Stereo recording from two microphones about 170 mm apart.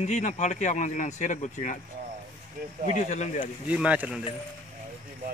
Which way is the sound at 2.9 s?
45° left (ahead or behind).